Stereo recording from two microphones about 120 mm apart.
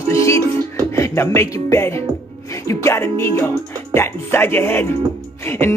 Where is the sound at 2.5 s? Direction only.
25° left (ahead or behind).